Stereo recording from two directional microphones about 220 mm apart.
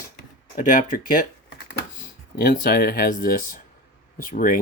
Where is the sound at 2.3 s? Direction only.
45° left (ahead or behind).